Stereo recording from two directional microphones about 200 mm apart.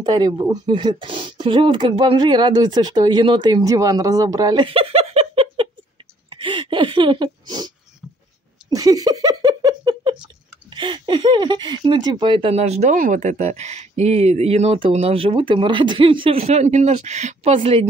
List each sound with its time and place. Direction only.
0.0 s speech: 20° right (ahead or behind)
6.3 s a sound: 25° right (ahead or behind)
10.2 s speech: 25° right (ahead or behind)